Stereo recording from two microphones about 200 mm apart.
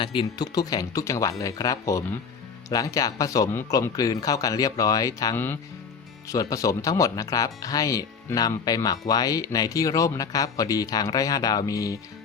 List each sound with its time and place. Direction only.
0.0 s speech: 25° left (ahead or behind)